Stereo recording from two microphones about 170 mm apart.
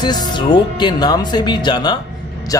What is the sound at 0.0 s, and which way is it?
A man's voice, 25° left (ahead or behind).